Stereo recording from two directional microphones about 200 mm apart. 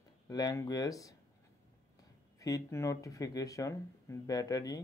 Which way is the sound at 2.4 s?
15° left (ahead or behind).